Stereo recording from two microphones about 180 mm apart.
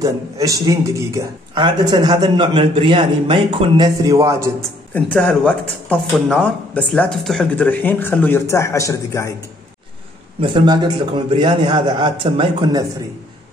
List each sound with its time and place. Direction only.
0.0 s speech: 20° right (ahead or behind)
5.1 s speech: 5° left (ahead or behind)
10.4 s speech: 25° right (ahead or behind)